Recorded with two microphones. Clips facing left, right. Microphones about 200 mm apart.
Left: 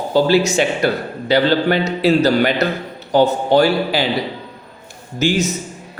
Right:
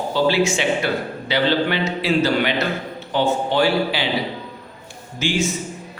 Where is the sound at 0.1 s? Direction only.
40° left (ahead or behind).